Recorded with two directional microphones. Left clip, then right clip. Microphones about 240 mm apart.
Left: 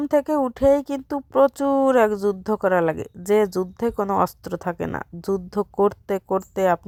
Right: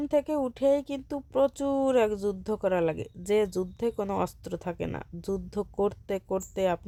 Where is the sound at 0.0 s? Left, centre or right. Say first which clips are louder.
Left 7 dB; centre.